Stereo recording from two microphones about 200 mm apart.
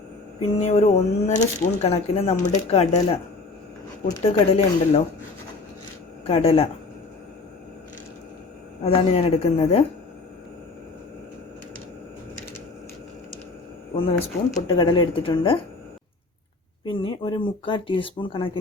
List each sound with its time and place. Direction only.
0.5 s speech: 35° left (ahead or behind)
4.2 s speech: 30° left (ahead or behind)
6.2 s speech: 30° left (ahead or behind)
8.8 s speech: 30° left (ahead or behind)
13.9 s speech: 25° left (ahead or behind)
16.8 s speech: 25° left (ahead or behind)